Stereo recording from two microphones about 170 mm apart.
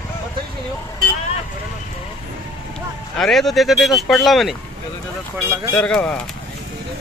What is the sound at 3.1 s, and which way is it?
Speech, centre (ahead or behind).